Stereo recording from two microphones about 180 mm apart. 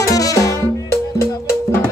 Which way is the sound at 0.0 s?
20° left (ahead or behind).